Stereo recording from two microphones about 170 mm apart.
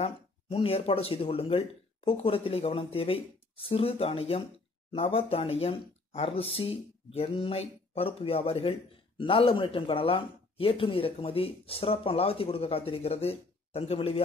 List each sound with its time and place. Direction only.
0.0 s speech: 35° left (ahead or behind)